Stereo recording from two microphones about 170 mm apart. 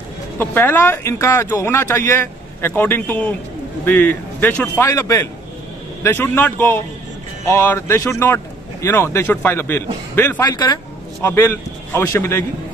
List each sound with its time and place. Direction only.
0.4 s speech: 10° left (ahead or behind)
10.4 s a sound: 25° left (ahead or behind)
11.2 s speech: 15° left (ahead or behind)